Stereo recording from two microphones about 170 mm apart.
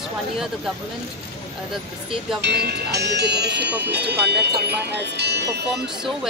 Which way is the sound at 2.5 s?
75° right (ahead or behind).